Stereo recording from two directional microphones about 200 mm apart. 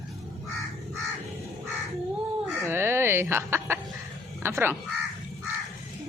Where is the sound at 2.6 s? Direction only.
10° right (ahead or behind).